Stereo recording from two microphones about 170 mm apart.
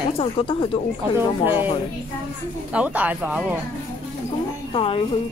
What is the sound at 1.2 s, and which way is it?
Speech, 10° right (ahead or behind).